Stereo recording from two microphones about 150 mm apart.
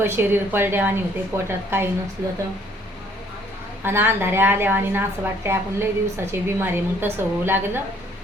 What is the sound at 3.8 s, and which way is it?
A woman's voice, 15° right (ahead or behind).